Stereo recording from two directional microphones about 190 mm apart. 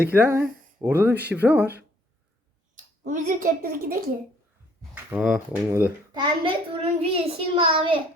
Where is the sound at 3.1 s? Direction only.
45° right (ahead or behind).